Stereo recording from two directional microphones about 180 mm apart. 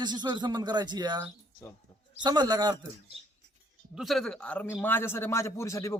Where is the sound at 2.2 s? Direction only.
25° right (ahead or behind).